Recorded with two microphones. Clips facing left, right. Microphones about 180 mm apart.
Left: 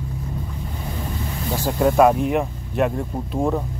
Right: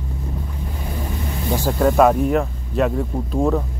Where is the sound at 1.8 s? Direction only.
Centre (ahead or behind).